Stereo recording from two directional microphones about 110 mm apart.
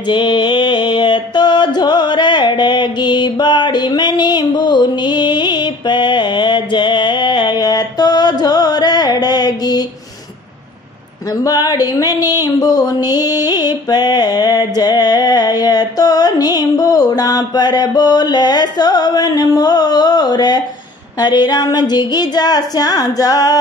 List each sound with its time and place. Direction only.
0.0 s music: 45° left (ahead or behind)
11.4 s a sound: 35° left (ahead or behind)
21.2 s a woman's voice: 40° left (ahead or behind)